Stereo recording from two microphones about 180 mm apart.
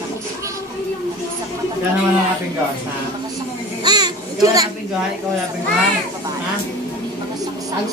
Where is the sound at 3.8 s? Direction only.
20° right (ahead or behind).